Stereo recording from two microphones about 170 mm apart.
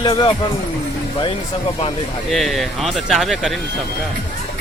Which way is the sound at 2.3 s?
Centre (ahead or behind).